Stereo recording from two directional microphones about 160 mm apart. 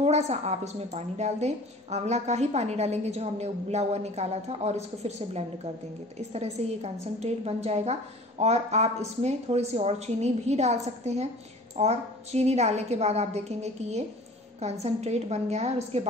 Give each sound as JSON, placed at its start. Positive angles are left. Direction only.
{"t": 0.0, "sound": "a woman's voice", "side_deg": -45}